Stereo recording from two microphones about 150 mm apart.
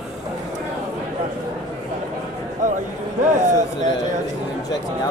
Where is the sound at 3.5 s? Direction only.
50° right (ahead or behind).